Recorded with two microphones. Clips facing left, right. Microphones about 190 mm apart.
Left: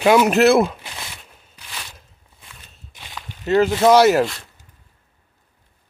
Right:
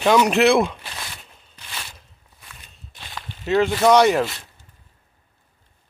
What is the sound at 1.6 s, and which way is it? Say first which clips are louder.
Walk: even; 5° right (ahead or behind).